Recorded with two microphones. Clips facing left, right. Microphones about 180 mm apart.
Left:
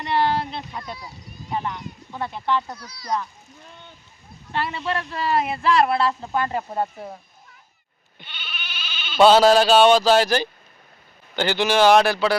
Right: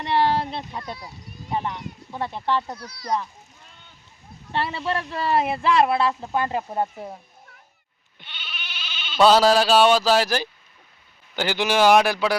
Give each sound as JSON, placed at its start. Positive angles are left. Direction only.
{"t": 0.0, "sound": "a sound", "side_deg": -25}
{"t": 2.1, "sound": "speech", "side_deg": -25}
{"t": 2.7, "sound": "a child's voice", "side_deg": -60}
{"t": 4.5, "sound": "speech", "side_deg": -30}
{"t": 8.3, "sound": "sheep", "side_deg": -25}
{"t": 9.2, "sound": "speech", "side_deg": 0}